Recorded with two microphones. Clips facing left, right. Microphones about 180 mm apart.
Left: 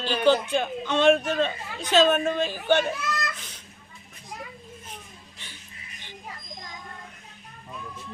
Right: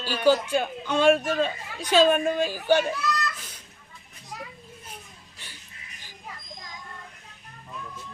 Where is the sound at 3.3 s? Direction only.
10° right (ahead or behind).